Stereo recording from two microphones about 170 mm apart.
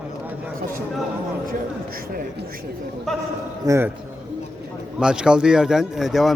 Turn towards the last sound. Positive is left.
turn(degrees=0)  # may be behind; listen again after turning